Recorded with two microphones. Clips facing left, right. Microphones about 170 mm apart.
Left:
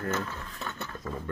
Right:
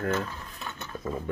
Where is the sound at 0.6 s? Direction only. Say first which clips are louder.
Right 3 dB; 15° right (ahead or behind).